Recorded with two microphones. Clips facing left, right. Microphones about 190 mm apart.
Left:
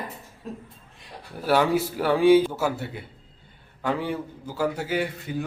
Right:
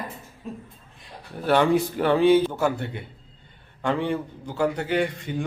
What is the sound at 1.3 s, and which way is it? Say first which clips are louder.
A man's voice: right 2 dB; 5° left (ahead or behind).